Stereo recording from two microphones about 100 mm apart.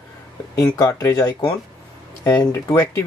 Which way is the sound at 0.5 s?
35° left (ahead or behind).